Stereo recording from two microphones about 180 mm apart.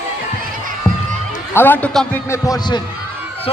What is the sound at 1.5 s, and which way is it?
Speech, 10° left (ahead or behind).